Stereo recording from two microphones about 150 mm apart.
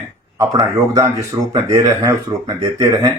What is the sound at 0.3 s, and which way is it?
Speech, 20° right (ahead or behind).